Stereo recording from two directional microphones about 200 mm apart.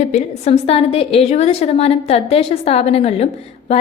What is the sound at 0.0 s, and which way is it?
A woman's voice, 35° left (ahead or behind).